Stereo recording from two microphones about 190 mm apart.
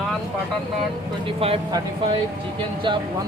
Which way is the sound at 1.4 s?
30° right (ahead or behind).